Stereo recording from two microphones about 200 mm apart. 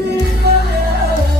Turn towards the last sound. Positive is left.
turn(degrees=-55)  # may be behind; listen again after turning